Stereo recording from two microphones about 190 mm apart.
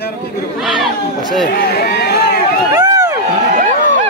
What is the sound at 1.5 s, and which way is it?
Speech, 55° left (ahead or behind).